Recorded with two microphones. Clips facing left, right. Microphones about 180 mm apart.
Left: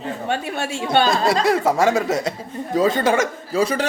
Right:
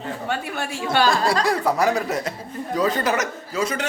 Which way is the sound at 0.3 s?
25° left (ahead or behind).